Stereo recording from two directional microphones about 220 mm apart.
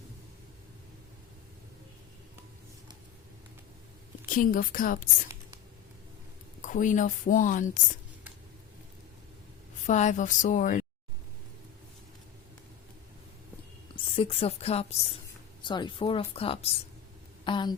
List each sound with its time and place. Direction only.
4.3 s a woman's voice: 40° left (ahead or behind)
6.6 s a woman's voice: 35° left (ahead or behind)
9.8 s a woman's voice: 35° left (ahead or behind)
13.9 s a woman's voice: 25° left (ahead or behind)